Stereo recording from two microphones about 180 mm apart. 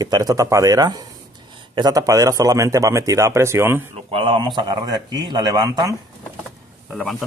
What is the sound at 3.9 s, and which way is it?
Speech, 30° right (ahead or behind).